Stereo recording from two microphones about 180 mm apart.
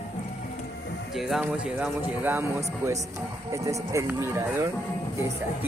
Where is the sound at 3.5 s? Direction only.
15° right (ahead or behind).